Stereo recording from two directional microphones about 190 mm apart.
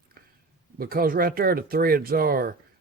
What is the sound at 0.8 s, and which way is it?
Speech, 50° right (ahead or behind).